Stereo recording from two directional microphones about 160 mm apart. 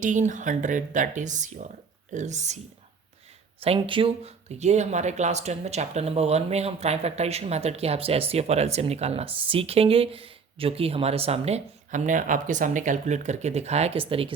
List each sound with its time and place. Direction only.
0.0 s speech: 50° right (ahead or behind)
3.6 s speech: 35° right (ahead or behind)